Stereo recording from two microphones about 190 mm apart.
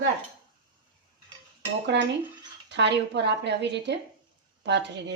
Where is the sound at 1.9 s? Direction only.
65° right (ahead or behind).